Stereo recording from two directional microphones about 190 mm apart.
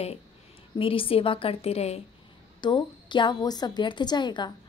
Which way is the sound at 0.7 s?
30° left (ahead or behind).